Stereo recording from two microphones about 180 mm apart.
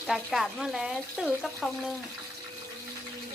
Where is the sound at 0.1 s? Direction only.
Centre (ahead or behind).